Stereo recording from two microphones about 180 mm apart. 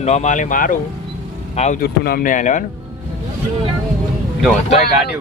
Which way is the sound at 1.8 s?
55° left (ahead or behind).